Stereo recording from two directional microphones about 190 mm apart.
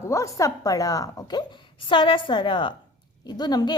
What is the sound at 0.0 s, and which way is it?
A woman's voice, 15° left (ahead or behind).